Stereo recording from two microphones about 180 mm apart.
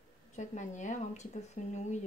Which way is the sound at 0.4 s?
40° left (ahead or behind).